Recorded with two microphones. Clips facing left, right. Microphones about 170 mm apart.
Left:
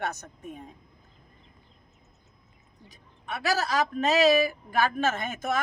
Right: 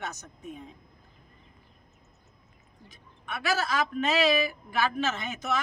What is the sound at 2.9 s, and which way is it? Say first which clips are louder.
A man's voice: left 2 dB; 35° left (ahead or behind).